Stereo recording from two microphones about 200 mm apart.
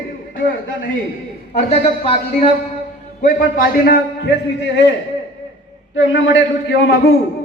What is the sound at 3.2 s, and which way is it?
A man's voice, 45° left (ahead or behind).